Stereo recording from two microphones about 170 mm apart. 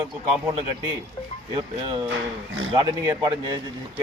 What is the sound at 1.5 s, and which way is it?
Speech, 25° right (ahead or behind).